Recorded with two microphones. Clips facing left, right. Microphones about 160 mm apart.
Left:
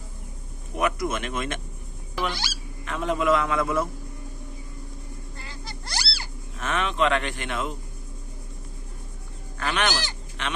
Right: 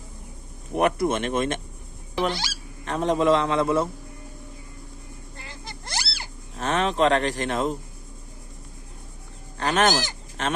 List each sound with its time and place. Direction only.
0.9 s speech: 30° right (ahead or behind)
2.3 s goose: 25° right (ahead or behind)
2.9 s speech: 35° right (ahead or behind)
5.4 s a sound: 20° right (ahead or behind)
6.6 s speech: 35° right (ahead or behind)
9.6 s speech: 40° right (ahead or behind)